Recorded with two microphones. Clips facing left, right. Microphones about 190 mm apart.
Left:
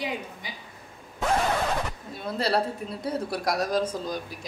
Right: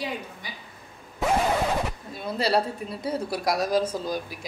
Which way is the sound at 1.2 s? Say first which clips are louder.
Right 2 dB; 5° right (ahead or behind).